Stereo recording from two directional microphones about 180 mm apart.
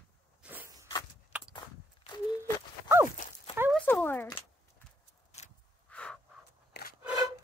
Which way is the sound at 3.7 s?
10° left (ahead or behind).